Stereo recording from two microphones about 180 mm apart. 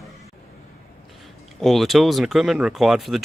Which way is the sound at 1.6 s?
Centre (ahead or behind).